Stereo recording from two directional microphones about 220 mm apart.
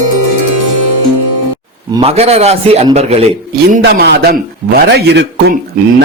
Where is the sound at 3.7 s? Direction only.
45° right (ahead or behind).